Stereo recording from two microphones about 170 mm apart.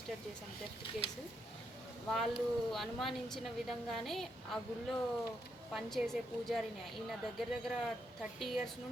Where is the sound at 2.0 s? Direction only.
Centre (ahead or behind).